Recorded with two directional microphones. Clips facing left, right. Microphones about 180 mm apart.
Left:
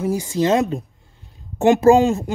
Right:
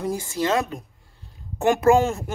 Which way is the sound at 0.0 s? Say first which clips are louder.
Left 5 dB; 15° left (ahead or behind).